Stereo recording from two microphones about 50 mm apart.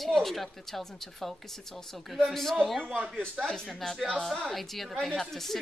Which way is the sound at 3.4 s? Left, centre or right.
Centre.